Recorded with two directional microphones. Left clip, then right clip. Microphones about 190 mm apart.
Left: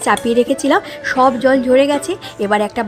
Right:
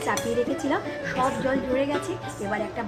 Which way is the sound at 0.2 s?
45° left (ahead or behind).